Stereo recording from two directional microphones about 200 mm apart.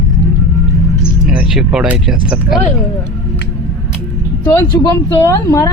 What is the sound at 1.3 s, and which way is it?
Speech, 5° right (ahead or behind).